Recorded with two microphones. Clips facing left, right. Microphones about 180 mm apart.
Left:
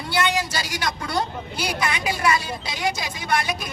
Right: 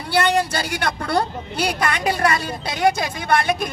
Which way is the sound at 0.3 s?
60° right (ahead or behind).